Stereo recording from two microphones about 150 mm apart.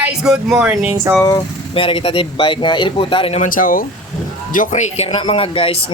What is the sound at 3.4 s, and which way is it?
Speech, 65° left (ahead or behind).